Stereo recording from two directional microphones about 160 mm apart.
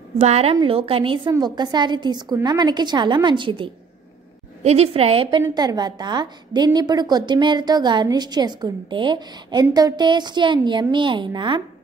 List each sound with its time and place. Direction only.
0.2 s a woman's voice: 40° right (ahead or behind)
5.4 s a woman's voice: 25° right (ahead or behind)